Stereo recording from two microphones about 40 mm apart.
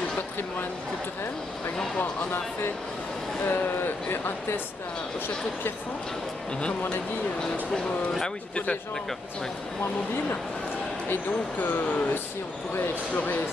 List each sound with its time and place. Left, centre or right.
3.4 s speech: left
11.6 s speech: left
13.1 s speech: left